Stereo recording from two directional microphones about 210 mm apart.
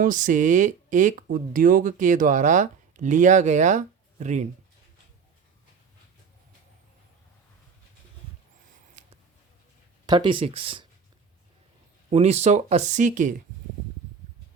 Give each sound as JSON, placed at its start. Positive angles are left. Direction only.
{"t": 0.0, "sound": "speech", "side_deg": -40}
{"t": 9.0, "sound": "a sound", "side_deg": -35}
{"t": 10.1, "sound": "speech", "side_deg": -20}
{"t": 12.1, "sound": "speech", "side_deg": -30}